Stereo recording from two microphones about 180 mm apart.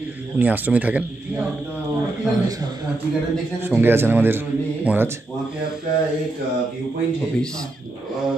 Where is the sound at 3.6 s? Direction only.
10° right (ahead or behind).